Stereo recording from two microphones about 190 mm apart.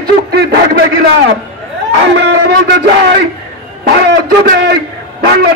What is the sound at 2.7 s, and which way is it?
A man's voice, 60° right (ahead or behind).